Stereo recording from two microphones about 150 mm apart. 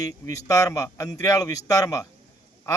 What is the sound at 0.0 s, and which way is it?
Speech, 20° left (ahead or behind).